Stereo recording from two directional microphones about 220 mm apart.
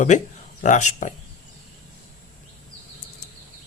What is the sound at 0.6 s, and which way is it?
Speech, 35° left (ahead or behind).